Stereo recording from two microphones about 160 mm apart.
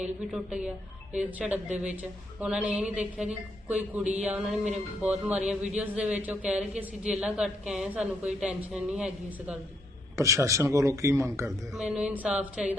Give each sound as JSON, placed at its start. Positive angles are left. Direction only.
{"t": 0.0, "sound": "a woman's voice", "side_deg": -5}
{"t": 10.2, "sound": "a man's voice", "side_deg": -20}
{"t": 11.7, "sound": "speech", "side_deg": -5}